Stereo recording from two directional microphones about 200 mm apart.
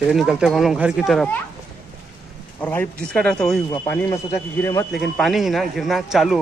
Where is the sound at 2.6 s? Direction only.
10° left (ahead or behind).